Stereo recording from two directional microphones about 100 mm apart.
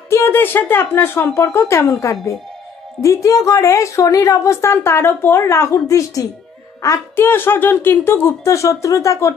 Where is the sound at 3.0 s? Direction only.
35° left (ahead or behind).